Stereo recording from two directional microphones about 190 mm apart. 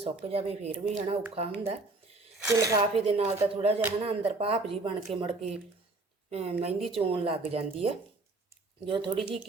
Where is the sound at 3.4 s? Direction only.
30° right (ahead or behind).